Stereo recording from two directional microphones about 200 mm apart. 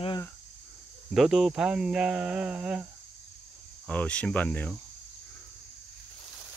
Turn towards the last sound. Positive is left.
turn(degrees=10)  # may be behind; listen again after turning